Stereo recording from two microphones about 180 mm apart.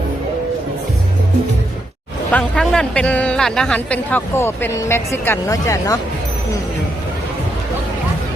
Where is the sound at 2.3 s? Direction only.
5° left (ahead or behind).